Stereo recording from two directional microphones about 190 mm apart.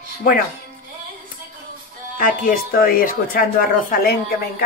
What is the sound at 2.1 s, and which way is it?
Speech, 45° left (ahead or behind).